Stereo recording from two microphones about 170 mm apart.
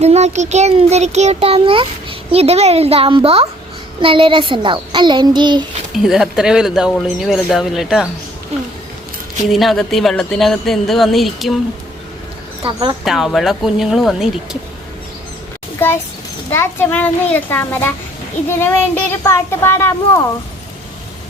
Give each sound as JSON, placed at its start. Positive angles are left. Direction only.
{"t": 0.0, "sound": "a child's voice", "side_deg": -40}
{"t": 5.9, "sound": "speech", "side_deg": 0}
{"t": 9.5, "sound": "speech", "side_deg": 0}
{"t": 12.6, "sound": "a child's voice", "side_deg": -30}
{"t": 13.1, "sound": "speech", "side_deg": 0}
{"t": 16.5, "sound": "a child's voice", "side_deg": 15}